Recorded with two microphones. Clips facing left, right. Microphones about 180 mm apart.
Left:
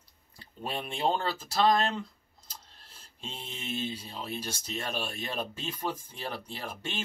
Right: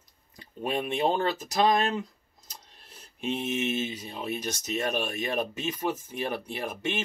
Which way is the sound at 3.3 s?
80° right.